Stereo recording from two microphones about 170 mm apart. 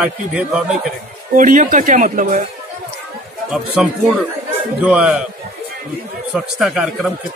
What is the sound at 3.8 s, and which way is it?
A man's voice, 5° right (ahead or behind).